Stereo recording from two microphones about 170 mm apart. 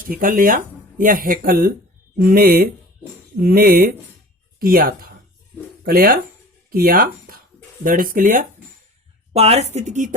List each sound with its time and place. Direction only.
0.0 s speech: 55° right (ahead or behind)
9.3 s speech: 40° right (ahead or behind)